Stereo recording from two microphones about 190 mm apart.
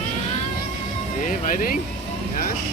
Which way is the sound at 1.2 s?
45° left (ahead or behind).